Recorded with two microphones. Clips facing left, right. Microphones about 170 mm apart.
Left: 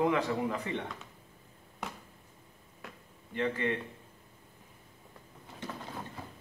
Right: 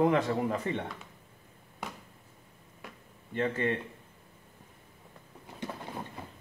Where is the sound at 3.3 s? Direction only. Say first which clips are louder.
Right 2 dB; 45° right (ahead or behind).